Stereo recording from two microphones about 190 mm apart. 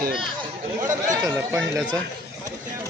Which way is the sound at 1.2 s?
15° right (ahead or behind).